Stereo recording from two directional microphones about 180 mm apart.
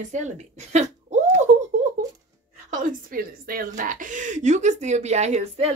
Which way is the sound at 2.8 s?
50° right (ahead or behind).